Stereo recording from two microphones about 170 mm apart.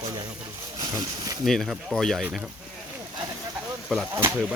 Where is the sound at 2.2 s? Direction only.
10° right (ahead or behind).